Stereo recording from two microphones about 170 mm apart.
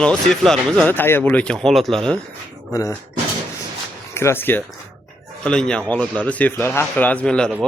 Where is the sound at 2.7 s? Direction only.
20° left (ahead or behind).